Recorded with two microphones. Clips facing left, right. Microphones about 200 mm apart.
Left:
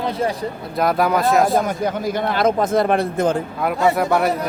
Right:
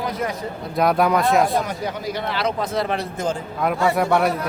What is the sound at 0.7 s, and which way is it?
Speech, centre (ahead or behind).